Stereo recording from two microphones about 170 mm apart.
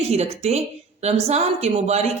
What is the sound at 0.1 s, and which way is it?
A woman's voice, 40° right (ahead or behind).